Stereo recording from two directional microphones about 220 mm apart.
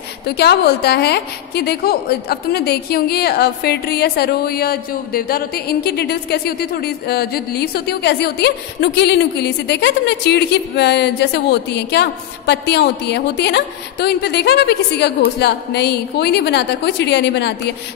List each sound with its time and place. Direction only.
0.3 s a woman's voice: 45° left (ahead or behind)